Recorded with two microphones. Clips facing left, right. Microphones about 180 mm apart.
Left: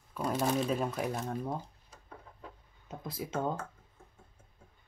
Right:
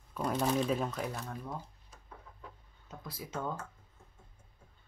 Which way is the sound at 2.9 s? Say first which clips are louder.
Left 5 dB; 20° left (ahead or behind).